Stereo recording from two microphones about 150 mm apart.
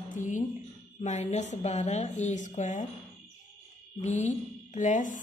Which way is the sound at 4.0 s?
50° left (ahead or behind).